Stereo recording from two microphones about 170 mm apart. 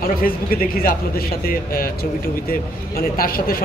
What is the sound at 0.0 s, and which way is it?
Speech, 60° left (ahead or behind).